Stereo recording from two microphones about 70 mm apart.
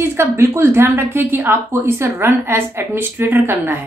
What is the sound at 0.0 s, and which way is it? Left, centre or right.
Speech, right.